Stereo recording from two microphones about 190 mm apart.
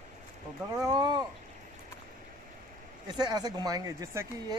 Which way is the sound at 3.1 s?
20° right (ahead or behind).